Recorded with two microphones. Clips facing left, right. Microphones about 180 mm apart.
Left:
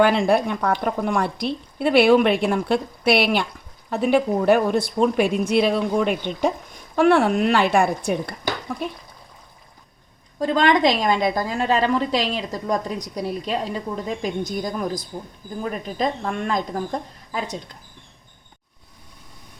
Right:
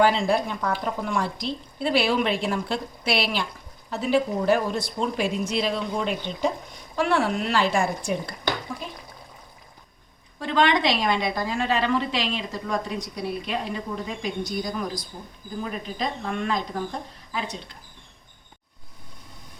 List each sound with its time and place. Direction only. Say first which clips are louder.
0.0 s a woman's voice: left 4 dB; 60° left (ahead or behind)
10.4 s a woman's voice: left 4 dB; 40° left (ahead or behind)